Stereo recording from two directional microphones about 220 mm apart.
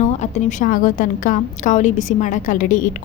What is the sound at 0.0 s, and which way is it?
A woman's voice, 30° left (ahead or behind).